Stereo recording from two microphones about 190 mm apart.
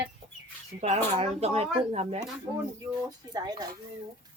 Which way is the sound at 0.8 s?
35° right (ahead or behind).